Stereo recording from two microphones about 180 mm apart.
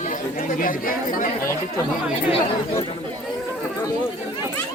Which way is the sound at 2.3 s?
30° left (ahead or behind).